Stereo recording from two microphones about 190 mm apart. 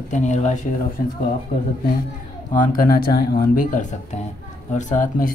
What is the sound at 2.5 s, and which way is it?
Speech, 50° left (ahead or behind).